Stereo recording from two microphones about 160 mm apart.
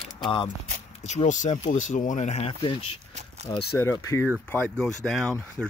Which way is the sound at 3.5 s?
25° left (ahead or behind).